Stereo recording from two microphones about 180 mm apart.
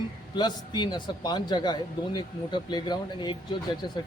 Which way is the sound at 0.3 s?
25° left (ahead or behind).